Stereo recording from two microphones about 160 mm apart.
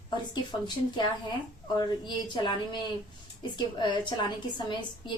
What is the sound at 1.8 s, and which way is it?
A woman's voice, 25° left (ahead or behind).